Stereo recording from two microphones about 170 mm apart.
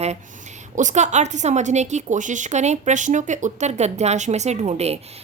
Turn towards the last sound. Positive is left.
turn(degrees=-40)  # may be behind; listen again after turning